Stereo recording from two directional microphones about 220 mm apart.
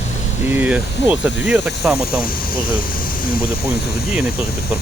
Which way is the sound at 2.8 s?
40° left (ahead or behind).